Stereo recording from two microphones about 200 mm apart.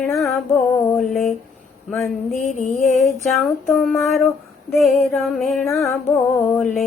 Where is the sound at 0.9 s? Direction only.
Centre (ahead or behind).